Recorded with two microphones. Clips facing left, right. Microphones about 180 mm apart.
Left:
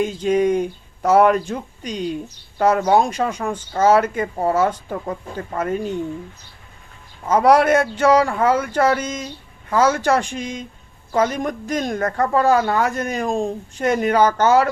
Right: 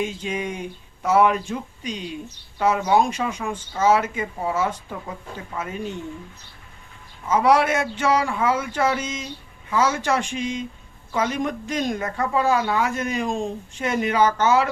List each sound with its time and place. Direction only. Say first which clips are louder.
0.2 s a woman's voice: left 11 dB; 40° left (ahead or behind)
7.3 s a woman's voice: left 4 dB; 45° left (ahead or behind)